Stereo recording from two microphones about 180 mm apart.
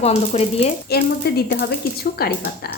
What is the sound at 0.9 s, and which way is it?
Speech, 60° left (ahead or behind).